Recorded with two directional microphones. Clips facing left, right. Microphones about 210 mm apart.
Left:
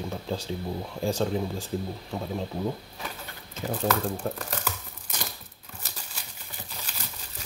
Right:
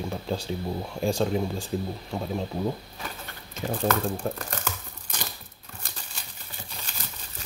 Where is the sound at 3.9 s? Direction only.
5° left (ahead or behind).